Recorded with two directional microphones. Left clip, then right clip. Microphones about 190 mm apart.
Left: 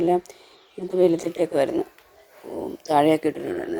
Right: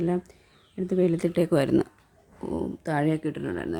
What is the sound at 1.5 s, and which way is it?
Speech, 10° right (ahead or behind).